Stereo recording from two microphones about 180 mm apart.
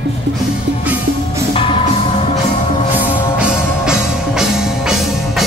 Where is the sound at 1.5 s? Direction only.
30° left (ahead or behind).